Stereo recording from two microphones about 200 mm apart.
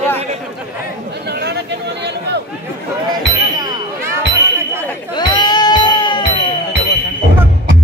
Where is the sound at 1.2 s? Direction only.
55° right (ahead or behind).